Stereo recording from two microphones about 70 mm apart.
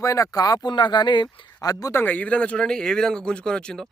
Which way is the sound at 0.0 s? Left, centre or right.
Left.